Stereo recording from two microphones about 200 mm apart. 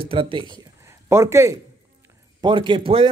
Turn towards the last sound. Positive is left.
turn(degrees=-25)  # may be behind; listen again after turning